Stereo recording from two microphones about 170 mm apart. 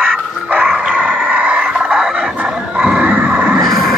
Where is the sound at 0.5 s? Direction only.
5° right (ahead or behind).